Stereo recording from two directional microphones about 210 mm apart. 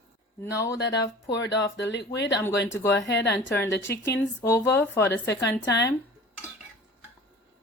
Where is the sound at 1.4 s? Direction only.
60° left (ahead or behind).